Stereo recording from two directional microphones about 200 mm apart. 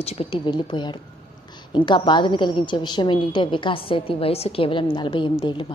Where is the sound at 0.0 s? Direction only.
30° left (ahead or behind).